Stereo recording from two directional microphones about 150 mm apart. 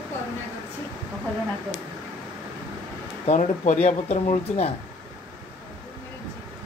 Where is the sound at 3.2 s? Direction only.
50° left (ahead or behind).